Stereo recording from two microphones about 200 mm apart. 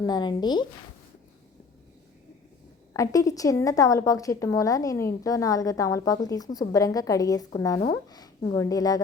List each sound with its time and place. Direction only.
0.0 s speech: 20° left (ahead or behind)
2.9 s a woman's voice: 15° left (ahead or behind)